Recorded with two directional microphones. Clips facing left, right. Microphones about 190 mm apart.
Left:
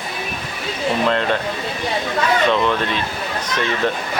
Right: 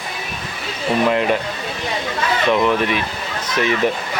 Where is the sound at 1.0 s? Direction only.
10° right (ahead or behind).